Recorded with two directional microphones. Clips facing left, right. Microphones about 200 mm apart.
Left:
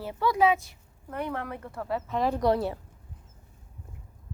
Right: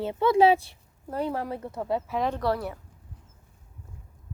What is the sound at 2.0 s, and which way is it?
Speech, 5° right (ahead or behind).